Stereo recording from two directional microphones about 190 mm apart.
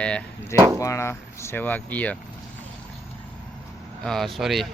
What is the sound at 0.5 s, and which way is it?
Speech, 15° right (ahead or behind).